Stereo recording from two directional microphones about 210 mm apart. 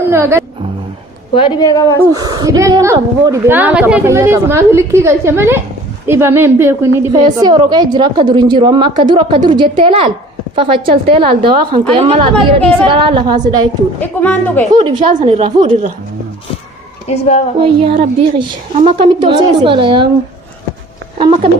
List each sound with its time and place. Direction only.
0.1 s a woman's voice: 10° right (ahead or behind)
1.3 s a woman's voice: 25° left (ahead or behind)
2.1 s a woman's voice: 15° right (ahead or behind)
14.0 s speech: 10° left (ahead or behind)
14.8 s a woman's voice: 25° right (ahead or behind)
17.1 s speech: 30° left (ahead or behind)
17.6 s a woman's voice: 25° right (ahead or behind)